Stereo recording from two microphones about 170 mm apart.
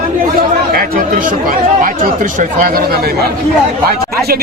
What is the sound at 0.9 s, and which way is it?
Speech, 55° right (ahead or behind).